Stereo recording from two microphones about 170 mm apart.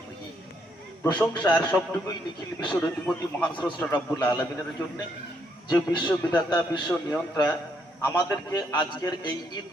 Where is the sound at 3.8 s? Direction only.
5° left (ahead or behind).